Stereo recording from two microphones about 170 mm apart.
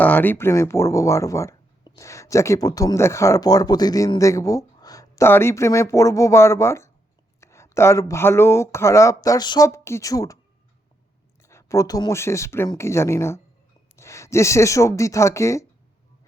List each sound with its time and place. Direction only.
0.0 s speech: 10° left (ahead or behind)
11.4 s speech: 15° left (ahead or behind)